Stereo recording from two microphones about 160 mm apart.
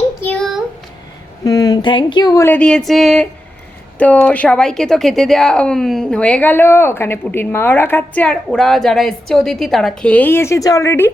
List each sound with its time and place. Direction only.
0.2 s a sound: 5° left (ahead or behind)
1.5 s speech: 25° left (ahead or behind)
2.4 s a woman's voice: 10° left (ahead or behind)